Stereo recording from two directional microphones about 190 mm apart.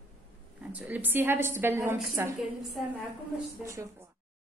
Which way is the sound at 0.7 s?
10° right (ahead or behind).